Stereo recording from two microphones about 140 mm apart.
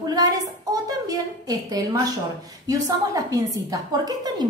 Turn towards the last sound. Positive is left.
turn(degrees=-25)  # may be behind; listen again after turning